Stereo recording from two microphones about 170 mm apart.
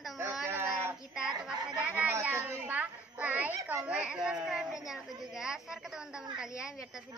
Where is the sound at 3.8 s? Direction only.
5° right (ahead or behind).